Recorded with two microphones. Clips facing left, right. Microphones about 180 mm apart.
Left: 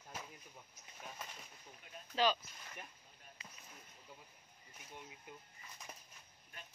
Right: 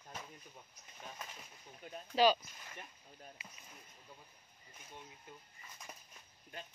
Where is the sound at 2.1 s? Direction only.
10° right (ahead or behind).